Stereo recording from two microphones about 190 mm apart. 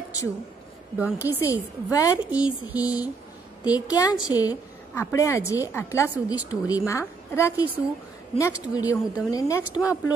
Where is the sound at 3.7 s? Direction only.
20° left (ahead or behind).